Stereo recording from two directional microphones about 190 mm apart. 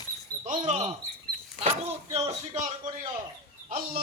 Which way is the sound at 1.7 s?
35° right (ahead or behind).